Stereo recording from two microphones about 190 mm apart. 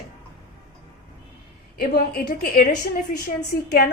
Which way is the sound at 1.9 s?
55° left (ahead or behind).